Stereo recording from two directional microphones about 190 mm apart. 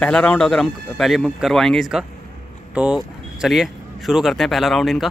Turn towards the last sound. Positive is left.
turn(degrees=0)  # may be behind; listen again after turning